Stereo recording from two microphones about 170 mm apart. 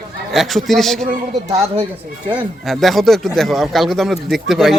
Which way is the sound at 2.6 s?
Centre (ahead or behind).